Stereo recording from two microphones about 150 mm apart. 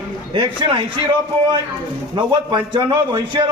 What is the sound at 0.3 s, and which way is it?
Speech, 30° right (ahead or behind).